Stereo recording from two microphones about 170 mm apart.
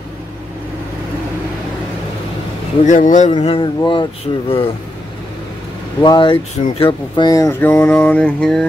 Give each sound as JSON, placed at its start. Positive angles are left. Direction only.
{"t": 2.8, "sound": "speech", "side_deg": 50}
{"t": 3.3, "sound": "speech", "side_deg": 30}
{"t": 6.0, "sound": "speech", "side_deg": 30}